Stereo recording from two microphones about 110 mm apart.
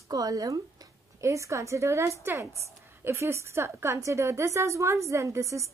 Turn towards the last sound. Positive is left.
turn(degrees=-25)  # may be behind; listen again after turning